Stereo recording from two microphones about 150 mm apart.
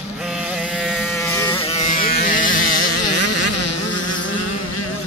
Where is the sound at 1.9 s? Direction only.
75° left (ahead or behind).